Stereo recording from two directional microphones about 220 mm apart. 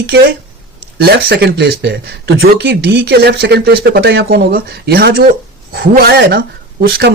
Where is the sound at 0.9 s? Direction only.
45° right (ahead or behind).